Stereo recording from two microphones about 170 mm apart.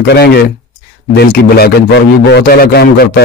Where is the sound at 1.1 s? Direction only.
65° left (ahead or behind).